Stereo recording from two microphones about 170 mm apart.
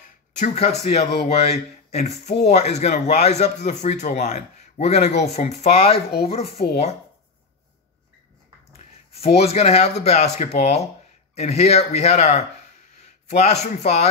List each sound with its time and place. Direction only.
0.4 s a man's voice: 40° left (ahead or behind)
8.7 s a man's voice: 35° left (ahead or behind)